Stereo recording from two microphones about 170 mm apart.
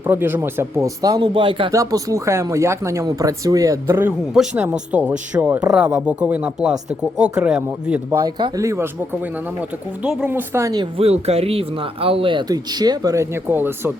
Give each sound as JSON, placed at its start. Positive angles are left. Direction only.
{"t": 0.0, "sound": "speech", "side_deg": -10}
{"t": 1.7, "sound": "speech", "side_deg": -20}
{"t": 8.2, "sound": "speech", "side_deg": -25}
{"t": 10.9, "sound": "speech", "side_deg": -35}